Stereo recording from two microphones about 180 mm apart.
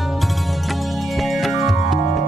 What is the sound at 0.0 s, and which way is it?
Music, centre (ahead or behind).